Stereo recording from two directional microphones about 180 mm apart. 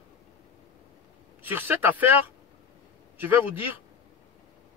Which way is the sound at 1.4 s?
10° right (ahead or behind).